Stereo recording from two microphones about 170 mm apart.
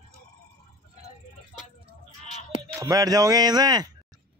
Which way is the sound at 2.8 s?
20° right (ahead or behind).